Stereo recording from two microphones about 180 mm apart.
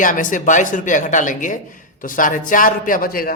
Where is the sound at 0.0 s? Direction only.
50° left (ahead or behind).